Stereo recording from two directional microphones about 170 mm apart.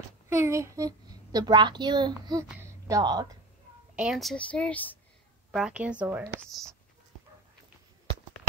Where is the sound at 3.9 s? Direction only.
5° right (ahead or behind).